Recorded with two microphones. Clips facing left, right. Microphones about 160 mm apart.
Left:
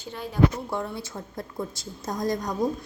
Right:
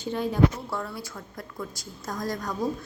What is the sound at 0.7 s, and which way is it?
A woman's voice, 20° left (ahead or behind).